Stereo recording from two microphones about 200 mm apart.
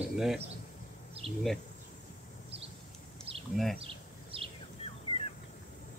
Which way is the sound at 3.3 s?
30° right (ahead or behind).